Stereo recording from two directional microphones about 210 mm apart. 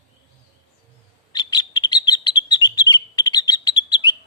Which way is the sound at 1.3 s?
20° left (ahead or behind).